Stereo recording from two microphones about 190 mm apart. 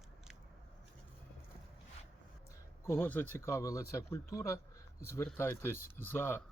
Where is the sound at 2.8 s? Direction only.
10° left (ahead or behind).